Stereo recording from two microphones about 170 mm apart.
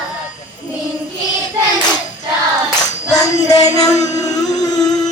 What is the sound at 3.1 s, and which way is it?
Music, 20° left (ahead or behind).